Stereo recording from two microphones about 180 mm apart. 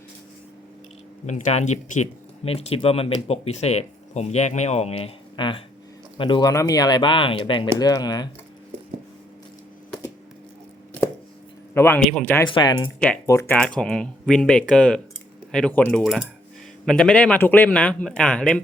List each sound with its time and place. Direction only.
1.3 s speech: 40° left (ahead or behind); by 8.3 s 20° left (ahead or behind)
11.7 s speech: 10° left (ahead or behind)
12.5 s speech: 25° left (ahead or behind)
13.6 s a man's voice: 5° left (ahead or behind)